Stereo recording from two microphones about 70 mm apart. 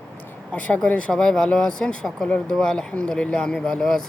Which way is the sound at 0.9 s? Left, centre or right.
Centre.